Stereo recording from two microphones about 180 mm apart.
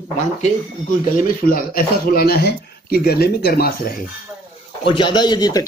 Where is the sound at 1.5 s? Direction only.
55° left (ahead or behind).